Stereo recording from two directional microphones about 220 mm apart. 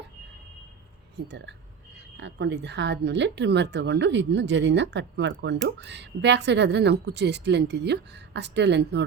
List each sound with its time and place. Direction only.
1.1 s speech: 50° right (ahead or behind)